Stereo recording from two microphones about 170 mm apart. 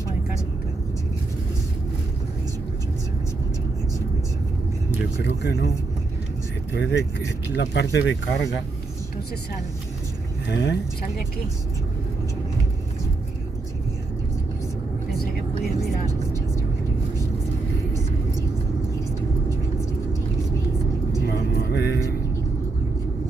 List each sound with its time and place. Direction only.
5.2 s speech: 85° left
6.7 s speech: 90° left
10.5 s speech: 90° left
21.3 s vehicle: 75° left (ahead or behind)